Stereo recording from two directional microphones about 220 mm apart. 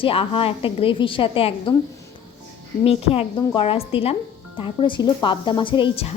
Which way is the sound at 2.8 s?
25° left (ahead or behind).